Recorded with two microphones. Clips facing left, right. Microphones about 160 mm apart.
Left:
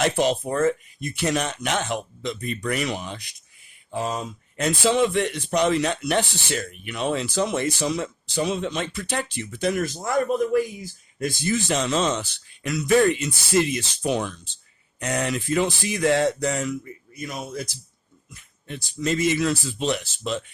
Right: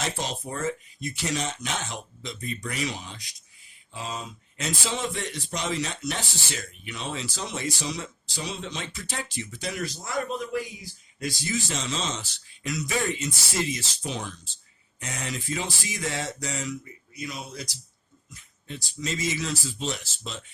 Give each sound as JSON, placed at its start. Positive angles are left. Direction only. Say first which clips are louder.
{"t": 0.0, "sound": "a man's voice", "louder": "left 10 dB", "side_deg": 65}